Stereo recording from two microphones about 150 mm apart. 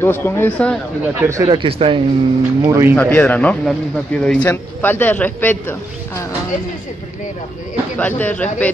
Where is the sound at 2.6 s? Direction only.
20° right (ahead or behind).